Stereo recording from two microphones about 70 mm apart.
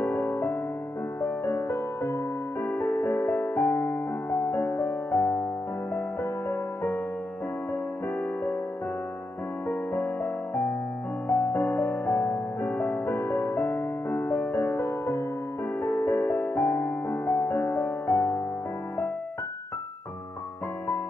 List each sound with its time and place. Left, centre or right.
0.0 s music: left
6.5 s music: left
9.7 s music: left